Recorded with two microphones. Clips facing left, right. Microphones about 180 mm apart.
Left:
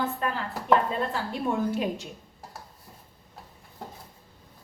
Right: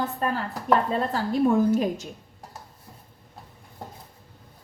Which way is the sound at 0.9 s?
40° right (ahead or behind).